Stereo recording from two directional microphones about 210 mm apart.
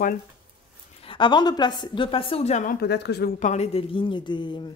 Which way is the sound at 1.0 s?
25° left (ahead or behind).